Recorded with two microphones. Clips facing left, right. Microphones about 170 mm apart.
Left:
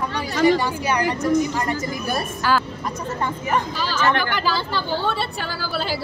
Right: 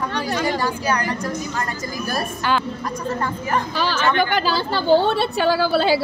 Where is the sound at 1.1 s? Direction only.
25° left (ahead or behind).